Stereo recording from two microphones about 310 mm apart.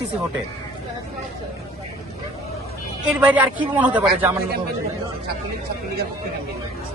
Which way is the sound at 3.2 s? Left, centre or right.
Centre.